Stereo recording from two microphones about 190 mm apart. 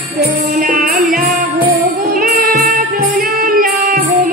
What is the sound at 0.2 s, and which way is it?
Music, 45° right (ahead or behind).